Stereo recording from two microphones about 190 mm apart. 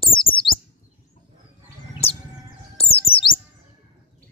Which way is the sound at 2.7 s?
30° left (ahead or behind).